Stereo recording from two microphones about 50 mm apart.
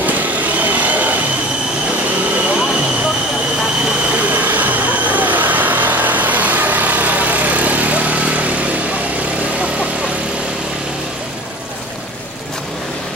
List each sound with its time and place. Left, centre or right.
0.6 s train: right
4.3 s vehicle: right